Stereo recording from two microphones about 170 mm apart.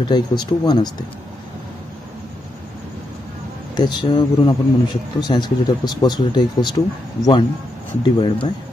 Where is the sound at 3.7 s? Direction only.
25° left (ahead or behind).